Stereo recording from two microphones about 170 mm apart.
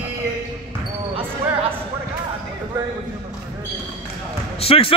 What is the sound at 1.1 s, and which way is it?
Basketball bounce, 35° right (ahead or behind).